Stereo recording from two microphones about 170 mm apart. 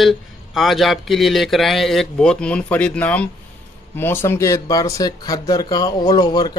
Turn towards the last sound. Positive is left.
turn(degrees=25)  # may be behind; listen again after turning